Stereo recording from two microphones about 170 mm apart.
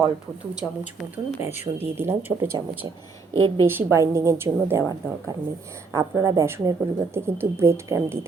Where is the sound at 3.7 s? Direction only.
10° right (ahead or behind).